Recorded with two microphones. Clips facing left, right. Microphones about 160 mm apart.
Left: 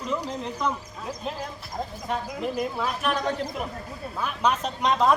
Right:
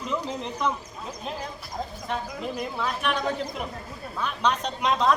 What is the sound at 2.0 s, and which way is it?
Speech, 5° left (ahead or behind).